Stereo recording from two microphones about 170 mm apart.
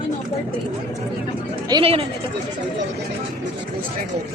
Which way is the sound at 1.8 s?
35° right (ahead or behind).